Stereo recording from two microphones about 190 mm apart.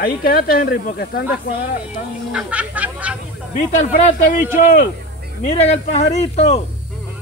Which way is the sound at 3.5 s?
40° left (ahead or behind).